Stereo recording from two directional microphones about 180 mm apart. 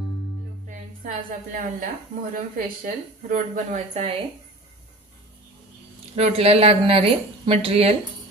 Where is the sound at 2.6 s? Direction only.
45° right (ahead or behind).